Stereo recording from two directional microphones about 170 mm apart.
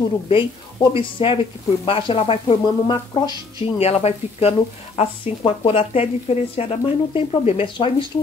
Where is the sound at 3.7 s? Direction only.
40° left (ahead or behind).